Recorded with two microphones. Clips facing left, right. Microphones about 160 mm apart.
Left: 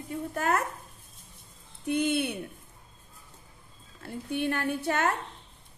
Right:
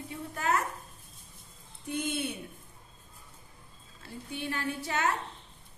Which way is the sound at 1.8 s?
65° left (ahead or behind).